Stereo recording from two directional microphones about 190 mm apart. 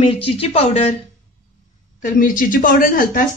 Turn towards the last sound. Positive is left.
turn(degrees=45)  # may be behind; listen again after turning